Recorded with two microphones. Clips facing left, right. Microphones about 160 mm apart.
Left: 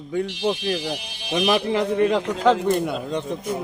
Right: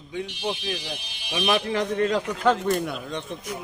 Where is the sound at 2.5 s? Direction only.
15° left (ahead or behind).